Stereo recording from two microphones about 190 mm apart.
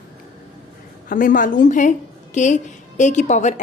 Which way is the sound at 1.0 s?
45° left (ahead or behind).